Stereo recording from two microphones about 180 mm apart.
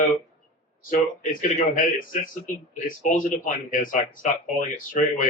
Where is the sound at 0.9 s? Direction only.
50° left (ahead or behind).